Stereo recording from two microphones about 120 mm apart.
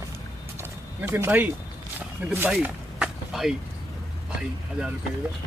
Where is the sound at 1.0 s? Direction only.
15° right (ahead or behind).